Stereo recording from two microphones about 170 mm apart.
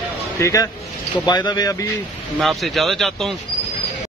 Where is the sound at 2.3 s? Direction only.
Centre (ahead or behind).